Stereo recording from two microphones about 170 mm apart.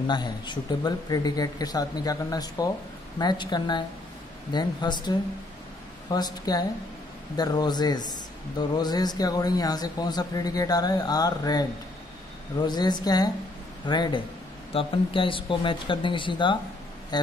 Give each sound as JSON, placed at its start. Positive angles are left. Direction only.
{"t": 0.0, "sound": "a man's voice", "side_deg": 25}